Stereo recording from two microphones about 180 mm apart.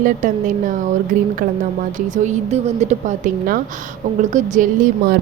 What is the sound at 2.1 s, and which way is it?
A woman's voice, 40° right (ahead or behind).